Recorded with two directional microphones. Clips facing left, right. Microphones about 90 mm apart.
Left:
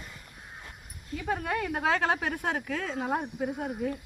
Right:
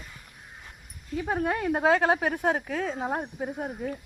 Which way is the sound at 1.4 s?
25° right (ahead or behind).